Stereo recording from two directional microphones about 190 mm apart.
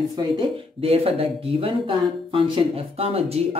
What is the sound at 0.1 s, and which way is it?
Speech, 30° right (ahead or behind).